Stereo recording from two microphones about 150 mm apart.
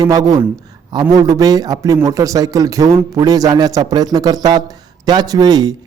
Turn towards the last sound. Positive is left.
turn(degrees=-25)  # may be behind; listen again after turning